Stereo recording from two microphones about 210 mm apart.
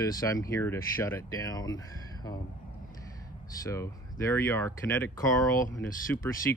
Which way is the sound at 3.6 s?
15° left (ahead or behind).